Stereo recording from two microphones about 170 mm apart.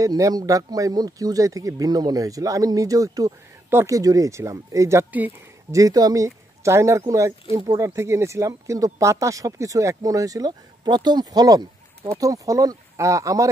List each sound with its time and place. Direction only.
0.0 s speech: 20° right (ahead or behind)